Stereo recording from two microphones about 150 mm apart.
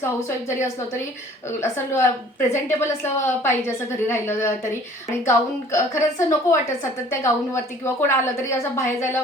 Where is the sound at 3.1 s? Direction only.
15° left (ahead or behind).